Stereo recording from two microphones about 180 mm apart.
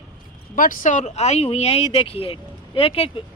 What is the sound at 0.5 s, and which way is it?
Speech, 50° left (ahead or behind).